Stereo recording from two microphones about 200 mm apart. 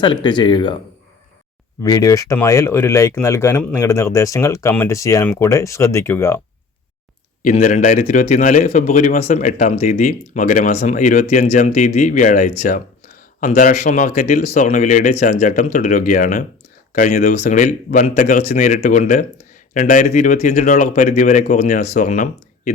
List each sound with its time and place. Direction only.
0.0 s speech: 25° left (ahead or behind)
1.8 s speech: 15° left (ahead or behind)
7.4 s a man's voice: 40° left (ahead or behind)